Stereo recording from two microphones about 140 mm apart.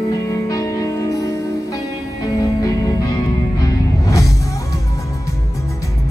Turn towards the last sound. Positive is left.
turn(degrees=25)  # may be behind; listen again after turning